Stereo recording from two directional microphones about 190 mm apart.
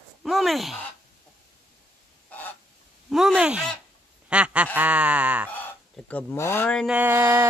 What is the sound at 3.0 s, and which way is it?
Speech, centre (ahead or behind).